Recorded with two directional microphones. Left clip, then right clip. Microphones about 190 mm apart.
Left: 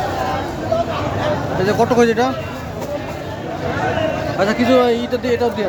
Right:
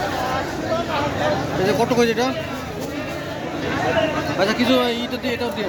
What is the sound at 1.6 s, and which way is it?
Speech, 45° left (ahead or behind).